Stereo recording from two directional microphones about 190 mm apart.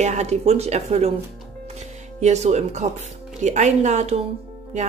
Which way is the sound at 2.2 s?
35° right (ahead or behind).